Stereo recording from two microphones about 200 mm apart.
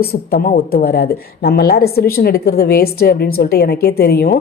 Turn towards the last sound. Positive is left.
turn(degrees=50)  # may be behind; listen again after turning